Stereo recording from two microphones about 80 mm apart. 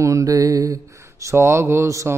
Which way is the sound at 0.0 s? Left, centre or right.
Right.